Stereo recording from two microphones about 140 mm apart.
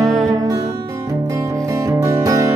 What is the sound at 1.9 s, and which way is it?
Music, 25° right (ahead or behind).